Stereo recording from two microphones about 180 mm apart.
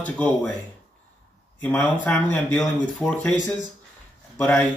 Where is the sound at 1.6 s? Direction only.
10° left (ahead or behind).